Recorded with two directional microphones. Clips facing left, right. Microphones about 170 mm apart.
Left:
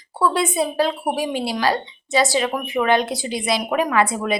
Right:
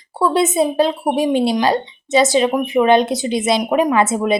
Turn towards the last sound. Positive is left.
turn(degrees=-25)  # may be behind; listen again after turning